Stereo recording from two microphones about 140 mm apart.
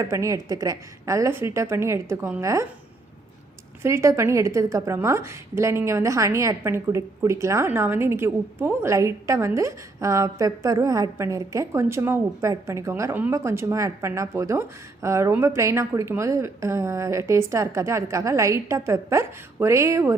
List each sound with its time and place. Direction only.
0.0 s a woman's voice: 20° right (ahead or behind)
3.8 s a woman's voice: 20° right (ahead or behind)